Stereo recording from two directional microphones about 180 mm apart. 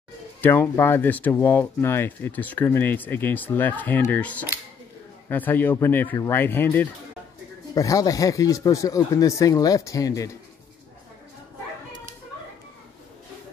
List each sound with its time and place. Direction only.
0.4 s speech: 10° left (ahead or behind)